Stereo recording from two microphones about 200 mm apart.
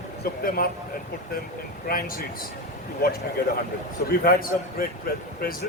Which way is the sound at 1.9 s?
45° left (ahead or behind).